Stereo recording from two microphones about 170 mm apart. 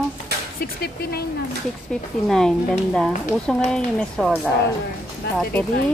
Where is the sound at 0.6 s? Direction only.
70° left (ahead or behind).